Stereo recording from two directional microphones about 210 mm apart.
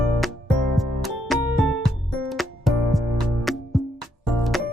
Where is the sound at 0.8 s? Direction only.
Centre (ahead or behind).